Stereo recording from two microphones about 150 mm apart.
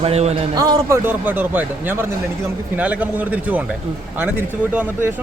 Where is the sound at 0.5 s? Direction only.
20° right (ahead or behind).